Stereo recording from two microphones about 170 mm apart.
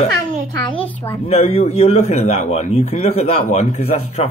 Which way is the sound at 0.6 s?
30° left (ahead or behind).